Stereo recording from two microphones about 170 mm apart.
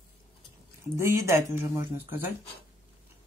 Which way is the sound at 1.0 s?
15° right (ahead or behind).